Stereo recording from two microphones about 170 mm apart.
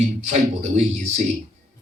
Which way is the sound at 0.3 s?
40° right (ahead or behind).